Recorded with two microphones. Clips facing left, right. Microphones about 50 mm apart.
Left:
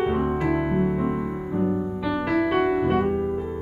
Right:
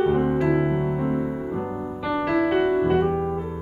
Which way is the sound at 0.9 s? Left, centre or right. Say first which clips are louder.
Right 1 dB; centre.